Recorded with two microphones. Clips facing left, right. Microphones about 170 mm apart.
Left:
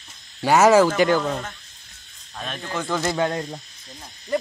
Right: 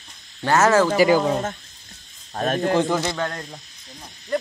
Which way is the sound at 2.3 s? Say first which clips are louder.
Right 11 dB; 45° right (ahead or behind).